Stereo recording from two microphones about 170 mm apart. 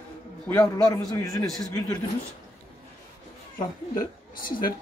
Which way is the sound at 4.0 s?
55° left (ahead or behind).